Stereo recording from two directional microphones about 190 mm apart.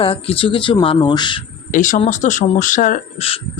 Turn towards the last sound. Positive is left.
turn(degrees=35)  # may be behind; listen again after turning